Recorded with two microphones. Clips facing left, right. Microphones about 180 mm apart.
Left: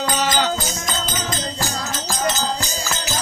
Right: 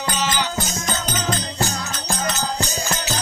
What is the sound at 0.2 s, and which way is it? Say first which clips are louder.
Music: left 2 dB; 50° left (ahead or behind).